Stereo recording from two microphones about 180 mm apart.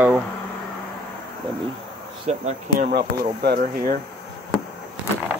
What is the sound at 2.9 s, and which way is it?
Speech, 65° right (ahead or behind).